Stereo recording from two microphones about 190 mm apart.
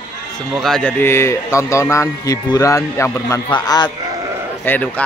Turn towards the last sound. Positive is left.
turn(degrees=10)  # may be behind; listen again after turning